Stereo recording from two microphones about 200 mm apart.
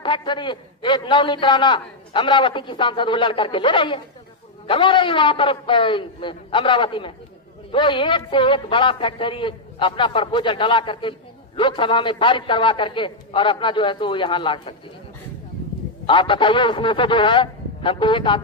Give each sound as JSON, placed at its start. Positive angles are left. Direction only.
{"t": 0.0, "sound": "a man's voice", "side_deg": 25}
{"t": 16.1, "sound": "a man's voice", "side_deg": 25}